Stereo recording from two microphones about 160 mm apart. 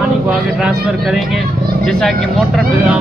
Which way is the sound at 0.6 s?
5° right (ahead or behind).